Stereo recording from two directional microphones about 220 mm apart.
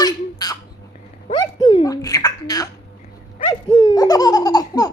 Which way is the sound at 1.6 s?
20° left (ahead or behind).